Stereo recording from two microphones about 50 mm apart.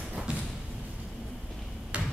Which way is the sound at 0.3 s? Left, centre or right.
Right.